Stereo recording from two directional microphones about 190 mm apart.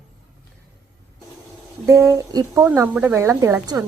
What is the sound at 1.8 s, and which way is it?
A woman's voice, 15° right (ahead or behind).